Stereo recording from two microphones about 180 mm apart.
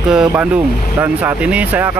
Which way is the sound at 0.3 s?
5° right (ahead or behind).